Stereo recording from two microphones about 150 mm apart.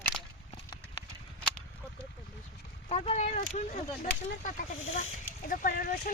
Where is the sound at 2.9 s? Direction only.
45° left (ahead or behind).